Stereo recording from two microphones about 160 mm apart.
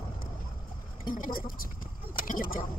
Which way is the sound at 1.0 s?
60° left (ahead or behind).